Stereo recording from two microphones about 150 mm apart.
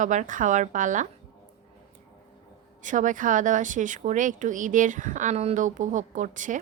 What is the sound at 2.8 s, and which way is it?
Speech, 60° right (ahead or behind).